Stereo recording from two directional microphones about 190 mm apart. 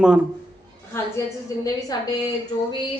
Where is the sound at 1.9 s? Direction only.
20° left (ahead or behind).